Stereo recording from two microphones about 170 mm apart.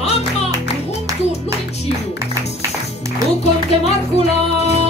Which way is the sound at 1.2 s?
40° left (ahead or behind).